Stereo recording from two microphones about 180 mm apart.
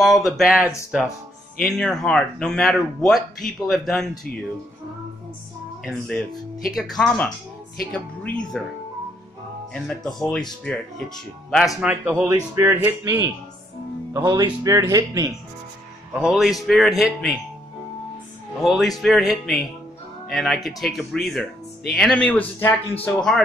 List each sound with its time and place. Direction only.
0.0 s speech: centre (ahead or behind)
6.0 s speech: centre (ahead or behind)
9.7 s speech: 5° left (ahead or behind); by 15.3 s 20° right (ahead or behind)
16.2 s speech: centre (ahead or behind)
18.6 s speech: centre (ahead or behind)